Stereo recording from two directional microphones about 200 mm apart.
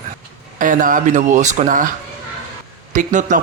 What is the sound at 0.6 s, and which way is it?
A man's voice, 40° right (ahead or behind).